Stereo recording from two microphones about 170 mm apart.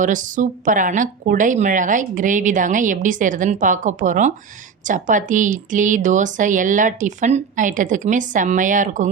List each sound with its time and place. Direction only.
0.0 s speech: 50° right (ahead or behind)